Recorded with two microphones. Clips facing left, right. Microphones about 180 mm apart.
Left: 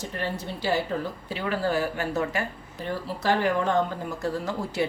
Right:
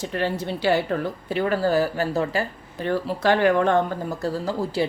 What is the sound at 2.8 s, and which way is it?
A woman's voice, 70° right (ahead or behind).